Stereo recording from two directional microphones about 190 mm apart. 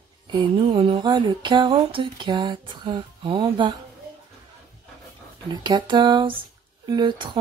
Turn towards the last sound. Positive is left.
turn(degrees=-25)  # may be behind; listen again after turning